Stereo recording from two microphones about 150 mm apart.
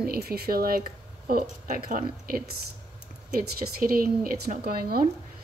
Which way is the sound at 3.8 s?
75° right (ahead or behind).